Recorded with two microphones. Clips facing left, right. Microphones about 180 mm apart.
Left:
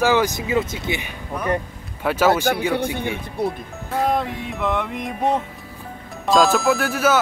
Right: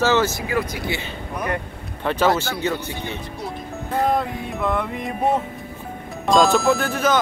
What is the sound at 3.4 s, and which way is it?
Speech, 55° left (ahead or behind).